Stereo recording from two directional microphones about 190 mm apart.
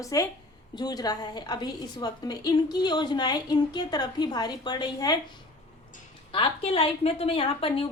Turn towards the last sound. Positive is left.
turn(degrees=30)  # may be behind; listen again after turning